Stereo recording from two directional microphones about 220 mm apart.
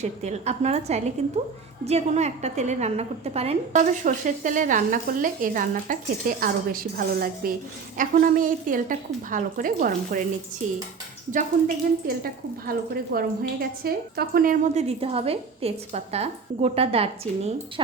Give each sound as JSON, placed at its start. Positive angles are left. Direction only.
{"t": 0.0, "sound": "a woman's voice", "side_deg": -30}
{"t": 12.0, "sound": "a woman's voice", "side_deg": -40}